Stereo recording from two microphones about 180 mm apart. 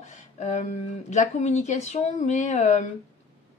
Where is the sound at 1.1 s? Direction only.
40° left (ahead or behind).